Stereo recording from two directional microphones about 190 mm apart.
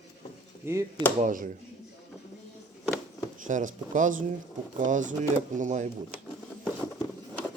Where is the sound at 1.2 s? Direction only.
45° right (ahead or behind).